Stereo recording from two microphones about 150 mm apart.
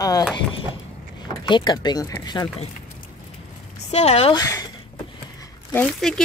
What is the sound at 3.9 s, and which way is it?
Speech, 45° left (ahead or behind).